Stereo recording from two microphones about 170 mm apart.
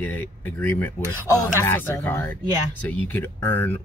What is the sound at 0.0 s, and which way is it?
Speech, 10° left (ahead or behind).